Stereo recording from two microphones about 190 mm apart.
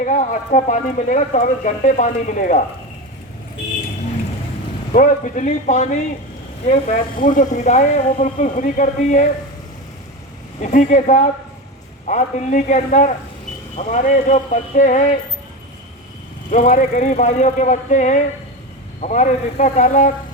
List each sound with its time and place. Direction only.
0.0 s speech: 40° left (ahead or behind)
4.9 s speech: 40° left (ahead or behind)
10.6 s speech: 40° left (ahead or behind)
16.5 s speech: 45° left (ahead or behind)